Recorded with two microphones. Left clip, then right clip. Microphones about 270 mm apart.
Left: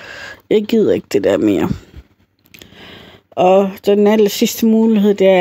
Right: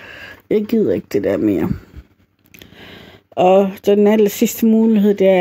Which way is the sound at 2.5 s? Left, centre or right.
Centre.